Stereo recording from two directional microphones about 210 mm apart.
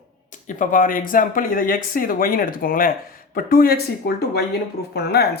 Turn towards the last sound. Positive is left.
turn(degrees=50)  # may be behind; listen again after turning